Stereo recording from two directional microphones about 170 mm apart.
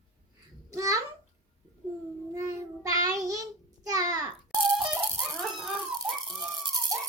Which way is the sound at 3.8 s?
20° right (ahead or behind).